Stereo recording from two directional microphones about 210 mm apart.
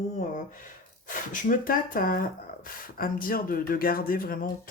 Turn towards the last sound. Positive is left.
turn(degrees=45)  # may be behind; listen again after turning